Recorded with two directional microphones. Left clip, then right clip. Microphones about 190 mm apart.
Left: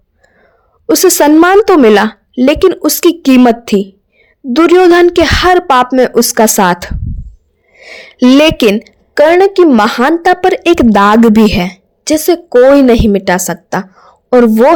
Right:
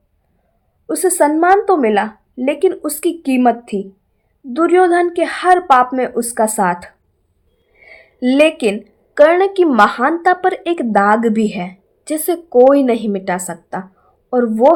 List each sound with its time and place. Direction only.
0.9 s a woman's voice: 50° left (ahead or behind)
7.8 s a sound: 45° left (ahead or behind)
8.7 s a woman's voice: 35° left (ahead or behind)